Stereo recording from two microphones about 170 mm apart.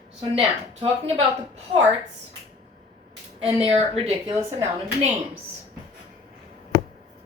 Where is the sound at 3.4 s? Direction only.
35° right (ahead or behind).